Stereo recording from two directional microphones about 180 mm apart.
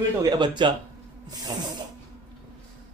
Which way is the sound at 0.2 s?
25° right (ahead or behind).